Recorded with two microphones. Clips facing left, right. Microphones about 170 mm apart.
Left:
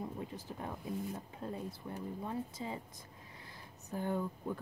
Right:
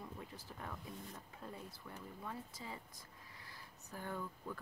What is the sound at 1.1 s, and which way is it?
Speech, 25° left (ahead or behind).